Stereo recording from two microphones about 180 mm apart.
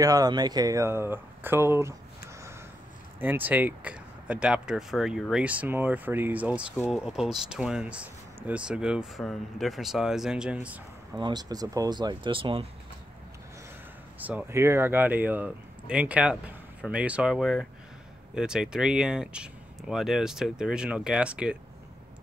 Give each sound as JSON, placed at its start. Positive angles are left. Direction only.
{"t": 0.0, "sound": "speech", "side_deg": -20}
{"t": 3.2, "sound": "speech", "side_deg": -10}
{"t": 11.1, "sound": "speech", "side_deg": -25}
{"t": 14.2, "sound": "speech", "side_deg": -10}